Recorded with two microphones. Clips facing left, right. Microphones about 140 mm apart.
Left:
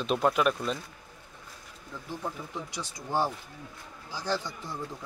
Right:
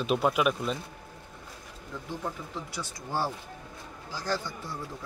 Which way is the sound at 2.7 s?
15° left (ahead or behind).